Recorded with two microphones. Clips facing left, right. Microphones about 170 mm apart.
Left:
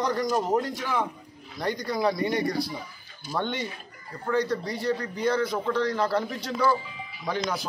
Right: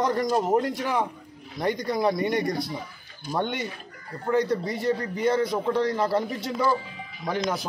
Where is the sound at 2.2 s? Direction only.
Centre (ahead or behind).